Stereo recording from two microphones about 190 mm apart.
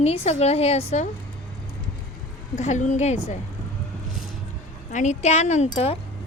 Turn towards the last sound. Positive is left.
turn(degrees=35)  # may be behind; listen again after turning